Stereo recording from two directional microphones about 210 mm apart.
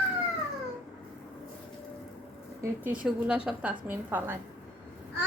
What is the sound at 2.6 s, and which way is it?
A woman's voice, 5° right (ahead or behind).